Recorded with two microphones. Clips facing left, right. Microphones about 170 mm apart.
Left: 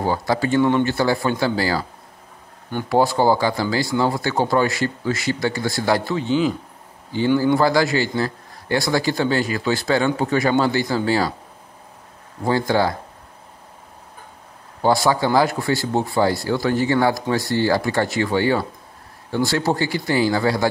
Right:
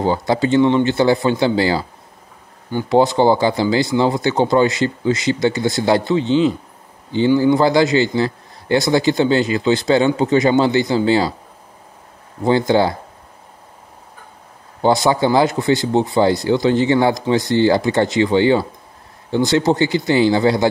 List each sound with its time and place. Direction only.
0.0 s speech: 20° right (ahead or behind)
2.9 s speech: 20° right (ahead or behind)
7.5 s speech: 20° right (ahead or behind)
12.4 s speech: 25° right (ahead or behind)
14.8 s speech: 20° right (ahead or behind)